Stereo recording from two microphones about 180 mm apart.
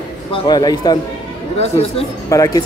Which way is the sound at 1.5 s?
35° left (ahead or behind).